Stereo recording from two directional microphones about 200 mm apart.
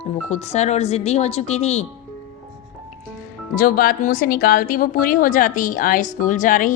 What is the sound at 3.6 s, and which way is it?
Speech, 45° left (ahead or behind).